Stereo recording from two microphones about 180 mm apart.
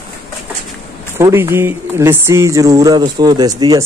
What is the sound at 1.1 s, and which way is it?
Speech, 15° right (ahead or behind).